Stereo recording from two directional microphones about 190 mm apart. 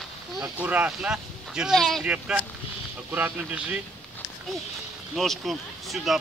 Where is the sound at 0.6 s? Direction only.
10° right (ahead or behind).